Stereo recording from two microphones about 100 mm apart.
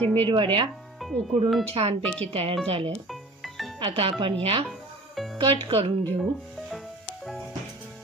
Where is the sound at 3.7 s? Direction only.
65° right (ahead or behind).